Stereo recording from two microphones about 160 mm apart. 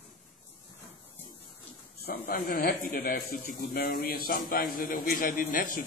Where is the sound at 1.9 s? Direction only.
75° left (ahead or behind).